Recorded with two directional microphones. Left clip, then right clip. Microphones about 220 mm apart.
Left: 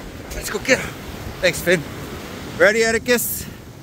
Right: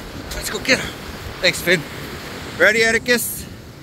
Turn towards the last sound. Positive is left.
turn(degrees=25)  # may be behind; listen again after turning